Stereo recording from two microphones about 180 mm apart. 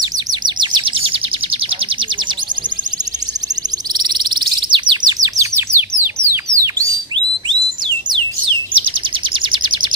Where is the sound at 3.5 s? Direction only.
20° right (ahead or behind).